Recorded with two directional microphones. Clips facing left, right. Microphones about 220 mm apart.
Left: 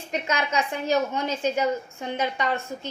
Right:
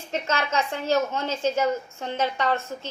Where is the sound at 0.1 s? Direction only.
15° left (ahead or behind).